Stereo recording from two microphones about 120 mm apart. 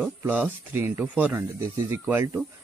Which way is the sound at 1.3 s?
25° right (ahead or behind).